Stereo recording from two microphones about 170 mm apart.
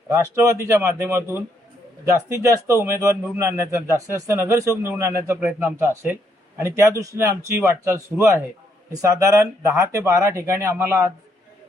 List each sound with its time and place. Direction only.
0.1 s speech: 15° right (ahead or behind)